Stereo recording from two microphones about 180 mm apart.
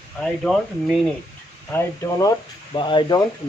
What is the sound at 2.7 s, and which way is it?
Speech, 25° left (ahead or behind).